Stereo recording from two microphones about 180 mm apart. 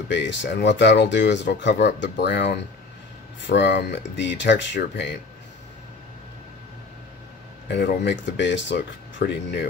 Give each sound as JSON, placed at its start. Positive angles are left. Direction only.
{"t": 0.1, "sound": "speech", "side_deg": 80}
{"t": 7.7, "sound": "speech", "side_deg": 70}